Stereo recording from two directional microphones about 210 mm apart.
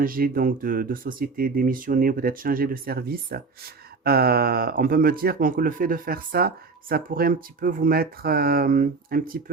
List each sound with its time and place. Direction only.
0.0 s speech: 45° right (ahead or behind)